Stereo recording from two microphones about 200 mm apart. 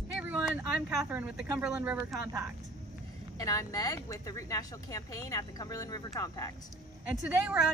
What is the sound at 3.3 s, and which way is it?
Speech, 15° left (ahead or behind).